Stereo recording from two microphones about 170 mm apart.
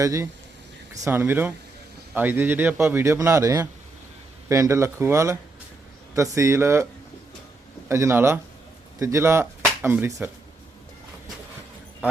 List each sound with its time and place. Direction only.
0.0 s speech: 20° right (ahead or behind)
7.9 s speech: 15° right (ahead or behind)